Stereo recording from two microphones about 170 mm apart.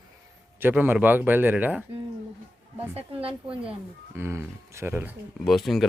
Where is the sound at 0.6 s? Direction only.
10° right (ahead or behind).